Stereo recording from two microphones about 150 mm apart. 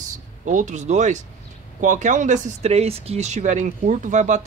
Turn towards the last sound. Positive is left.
turn(degrees=-55)  # may be behind; listen again after turning